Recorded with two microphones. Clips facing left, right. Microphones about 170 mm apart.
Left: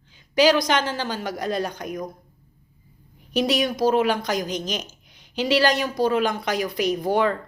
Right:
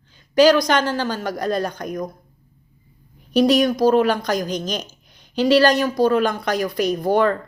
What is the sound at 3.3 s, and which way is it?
Speech, 45° right (ahead or behind).